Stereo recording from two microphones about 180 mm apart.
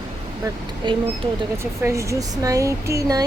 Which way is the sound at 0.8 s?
25° right (ahead or behind).